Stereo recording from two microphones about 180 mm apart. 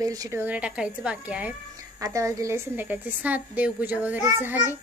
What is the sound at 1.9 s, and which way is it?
A woman's voice, 20° right (ahead or behind).